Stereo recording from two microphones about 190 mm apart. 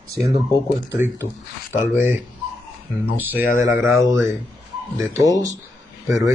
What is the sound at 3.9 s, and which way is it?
Speech, 15° right (ahead or behind).